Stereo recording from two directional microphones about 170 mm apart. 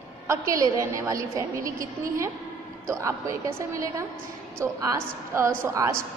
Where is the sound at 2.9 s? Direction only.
20° right (ahead or behind).